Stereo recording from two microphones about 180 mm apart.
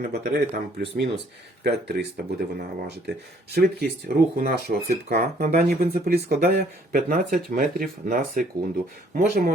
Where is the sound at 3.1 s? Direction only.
60° right (ahead or behind).